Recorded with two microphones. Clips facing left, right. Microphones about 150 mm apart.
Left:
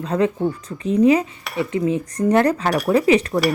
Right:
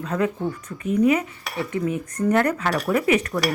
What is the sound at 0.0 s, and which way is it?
Speech, 30° left (ahead or behind).